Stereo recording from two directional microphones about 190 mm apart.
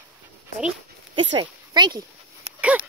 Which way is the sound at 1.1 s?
25° right (ahead or behind).